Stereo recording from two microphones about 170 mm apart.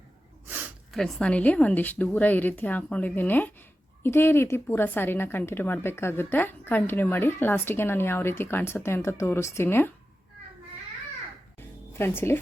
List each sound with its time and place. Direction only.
0.4 s a sound: 10° right (ahead or behind)
0.9 s speech: centre (ahead or behind)
11.9 s speech: 15° left (ahead or behind)